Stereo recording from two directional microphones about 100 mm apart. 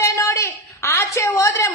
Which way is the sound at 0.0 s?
30° left (ahead or behind).